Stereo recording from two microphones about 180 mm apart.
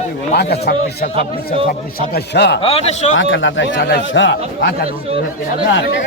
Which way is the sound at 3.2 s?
90° left.